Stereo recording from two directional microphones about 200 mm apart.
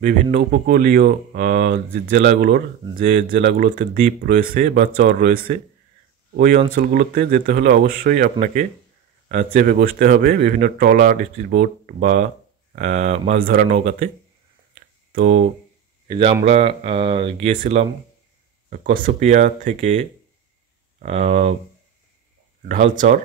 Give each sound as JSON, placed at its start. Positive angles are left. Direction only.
{"t": 0.3, "sound": "speech", "side_deg": -50}
{"t": 15.1, "sound": "speech", "side_deg": -35}
{"t": 18.7, "sound": "speech", "side_deg": -45}
{"t": 22.7, "sound": "speech", "side_deg": -40}